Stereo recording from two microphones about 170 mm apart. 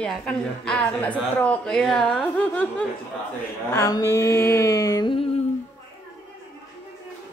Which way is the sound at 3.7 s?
20° left (ahead or behind).